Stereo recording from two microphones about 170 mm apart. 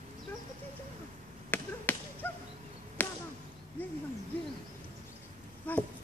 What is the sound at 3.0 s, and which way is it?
Chop, 10° left (ahead or behind).